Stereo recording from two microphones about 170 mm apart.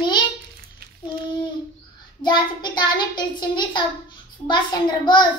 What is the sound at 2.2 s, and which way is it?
Child singing, 25° left (ahead or behind).